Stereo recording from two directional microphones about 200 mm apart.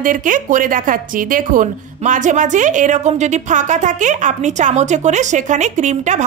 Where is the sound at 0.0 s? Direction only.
40° right (ahead or behind).